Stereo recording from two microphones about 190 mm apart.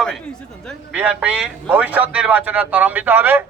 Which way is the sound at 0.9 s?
5° right (ahead or behind).